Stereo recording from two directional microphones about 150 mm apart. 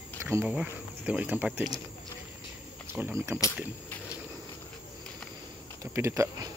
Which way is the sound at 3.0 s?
15° right (ahead or behind).